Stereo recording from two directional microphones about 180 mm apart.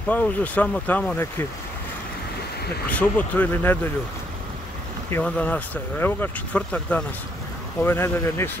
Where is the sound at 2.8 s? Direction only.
10° left (ahead or behind).